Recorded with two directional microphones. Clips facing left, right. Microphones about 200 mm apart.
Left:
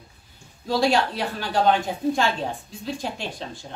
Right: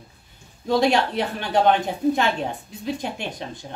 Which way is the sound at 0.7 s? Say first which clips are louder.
Right 2 dB; 20° right (ahead or behind).